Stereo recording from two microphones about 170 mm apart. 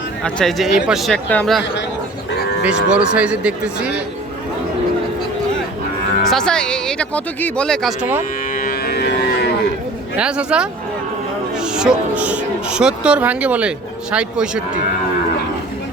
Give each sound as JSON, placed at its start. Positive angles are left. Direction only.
{"t": 0.2, "sound": "speech", "side_deg": 5}
{"t": 2.6, "sound": "speech", "side_deg": -5}
{"t": 6.3, "sound": "speech", "side_deg": 5}
{"t": 8.5, "sound": "cattle", "side_deg": 55}
{"t": 10.2, "sound": "speech", "side_deg": -5}